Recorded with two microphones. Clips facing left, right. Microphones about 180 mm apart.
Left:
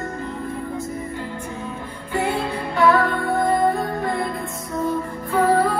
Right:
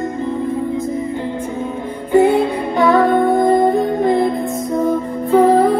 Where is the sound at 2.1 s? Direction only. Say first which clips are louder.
Right 11 dB; 20° right (ahead or behind).